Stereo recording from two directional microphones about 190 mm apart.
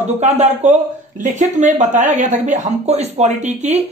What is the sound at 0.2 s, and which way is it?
A woman's voice, 35° right (ahead or behind).